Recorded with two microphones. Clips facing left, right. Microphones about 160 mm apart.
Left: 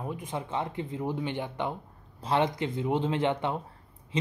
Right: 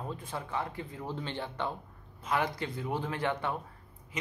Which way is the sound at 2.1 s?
30° left (ahead or behind).